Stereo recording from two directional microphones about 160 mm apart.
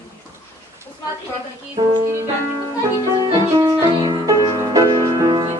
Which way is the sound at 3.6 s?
20° right (ahead or behind).